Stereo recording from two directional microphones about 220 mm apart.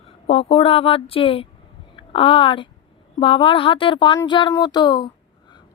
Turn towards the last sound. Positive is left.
turn(degrees=20)  # may be behind; listen again after turning